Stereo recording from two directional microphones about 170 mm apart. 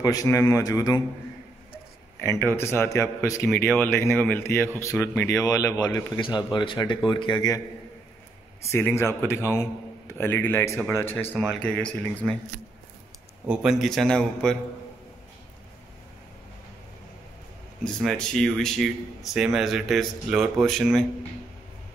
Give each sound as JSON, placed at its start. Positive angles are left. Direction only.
{"t": 0.0, "sound": "a man's voice", "side_deg": 20}
{"t": 2.1, "sound": "a man's voice", "side_deg": 15}
{"t": 8.7, "sound": "speech", "side_deg": 15}
{"t": 13.5, "sound": "speech", "side_deg": -5}
{"t": 17.8, "sound": "speech", "side_deg": 5}